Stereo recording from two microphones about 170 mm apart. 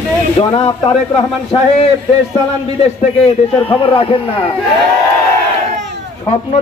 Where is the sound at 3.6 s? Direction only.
30° left (ahead or behind).